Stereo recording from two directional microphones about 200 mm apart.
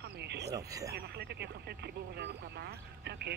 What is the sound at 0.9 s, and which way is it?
Speech, 55° right (ahead or behind).